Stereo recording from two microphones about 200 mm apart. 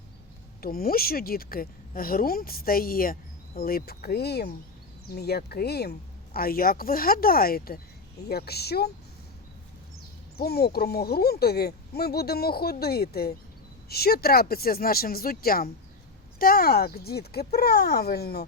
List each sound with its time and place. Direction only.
0.6 s speech: 50° left (ahead or behind)
10.3 s speech: 50° left (ahead or behind)